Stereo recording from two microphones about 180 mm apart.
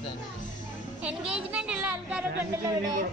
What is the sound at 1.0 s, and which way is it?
A woman's voice, 5° right (ahead or behind).